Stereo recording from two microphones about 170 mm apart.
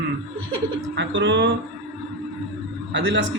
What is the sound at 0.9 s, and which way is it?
Music, 90° right.